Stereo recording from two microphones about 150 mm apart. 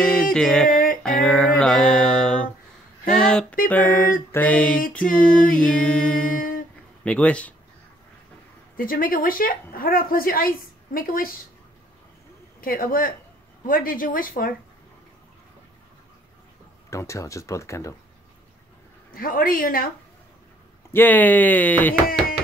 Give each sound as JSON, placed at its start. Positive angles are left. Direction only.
{"t": 0.0, "sound": "music", "side_deg": 5}
{"t": 0.7, "sound": "music", "side_deg": 65}
{"t": 1.0, "sound": "music", "side_deg": 5}
{"t": 3.6, "sound": "speech", "side_deg": 10}
{"t": 5.6, "sound": "music", "side_deg": 5}
{"t": 6.2, "sound": "humming", "side_deg": 65}
{"t": 7.1, "sound": "speech", "side_deg": 10}
{"t": 8.7, "sound": "a woman's voice", "side_deg": 70}
{"t": 12.5, "sound": "a woman's voice", "side_deg": 70}
{"t": 16.9, "sound": "speech", "side_deg": 20}
{"t": 19.1, "sound": "a woman's voice", "side_deg": 70}
{"t": 20.9, "sound": "speech", "side_deg": 10}